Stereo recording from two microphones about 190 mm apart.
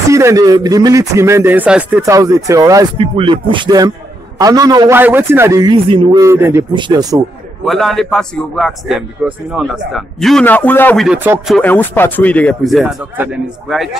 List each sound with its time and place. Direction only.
0.1 s a man's voice: 15° right (ahead or behind)
3.0 s rapping: 25° right (ahead or behind)
4.4 s a man's voice: 20° right (ahead or behind)
6.7 s rapping: 20° right (ahead or behind)
7.6 s a man's voice: centre (ahead or behind)
11.1 s a man's voice: 5° right (ahead or behind)
11.5 s speech: 10° left (ahead or behind)